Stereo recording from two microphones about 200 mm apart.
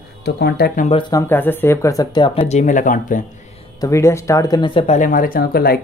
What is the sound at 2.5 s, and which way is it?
Speech, 35° left (ahead or behind).